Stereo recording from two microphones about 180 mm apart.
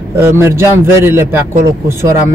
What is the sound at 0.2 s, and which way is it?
Speech, 15° right (ahead or behind).